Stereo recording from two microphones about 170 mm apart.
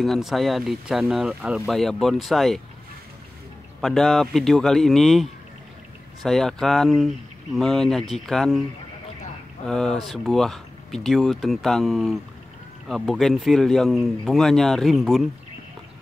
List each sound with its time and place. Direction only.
0.0 s speech: centre (ahead or behind)
3.8 s speech: centre (ahead or behind)
9.7 s speech: 5° left (ahead or behind)